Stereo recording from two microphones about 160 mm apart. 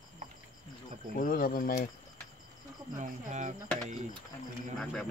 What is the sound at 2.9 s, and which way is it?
Speech, 45° right (ahead or behind).